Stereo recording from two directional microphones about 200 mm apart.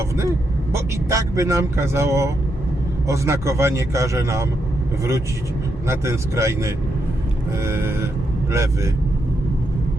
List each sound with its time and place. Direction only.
0.2 s a man's voice: 15° right (ahead or behind)
5.9 s a man's voice: 15° right (ahead or behind)